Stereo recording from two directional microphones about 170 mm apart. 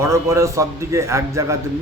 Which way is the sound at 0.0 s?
15° right (ahead or behind).